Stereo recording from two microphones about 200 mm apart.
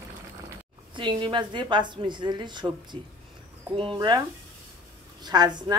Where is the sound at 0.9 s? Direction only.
25° right (ahead or behind).